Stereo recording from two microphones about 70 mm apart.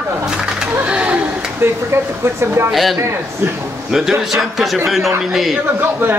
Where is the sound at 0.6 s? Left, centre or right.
Centre.